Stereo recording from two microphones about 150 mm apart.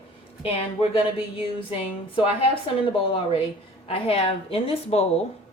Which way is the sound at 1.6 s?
35° left (ahead or behind).